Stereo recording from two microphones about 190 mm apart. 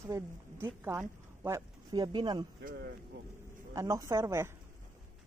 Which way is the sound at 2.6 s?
55° right (ahead or behind).